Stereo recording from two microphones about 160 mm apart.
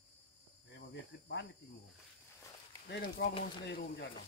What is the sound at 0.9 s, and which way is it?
Speech, 90° left.